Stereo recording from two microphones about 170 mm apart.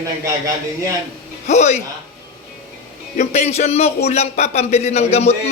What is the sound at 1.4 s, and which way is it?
Speech, 40° left (ahead or behind).